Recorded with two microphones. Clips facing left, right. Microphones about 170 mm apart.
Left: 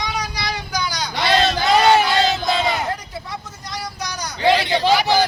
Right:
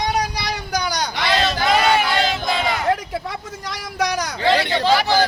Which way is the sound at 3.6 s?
90° right.